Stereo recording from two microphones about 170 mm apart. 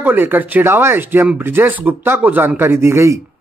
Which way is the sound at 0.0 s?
10° right (ahead or behind).